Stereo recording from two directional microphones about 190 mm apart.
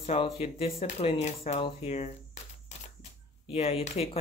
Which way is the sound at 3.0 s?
30° left (ahead or behind).